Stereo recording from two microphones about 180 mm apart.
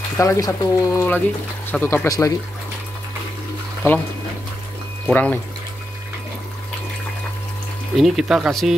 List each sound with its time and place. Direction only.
0.2 s speech: 15° left (ahead or behind)
5.0 s speech: 10° left (ahead or behind)
7.9 s speech: centre (ahead or behind)